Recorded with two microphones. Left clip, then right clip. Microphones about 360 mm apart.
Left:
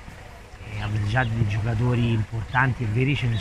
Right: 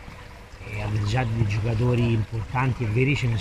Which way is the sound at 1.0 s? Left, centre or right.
Centre.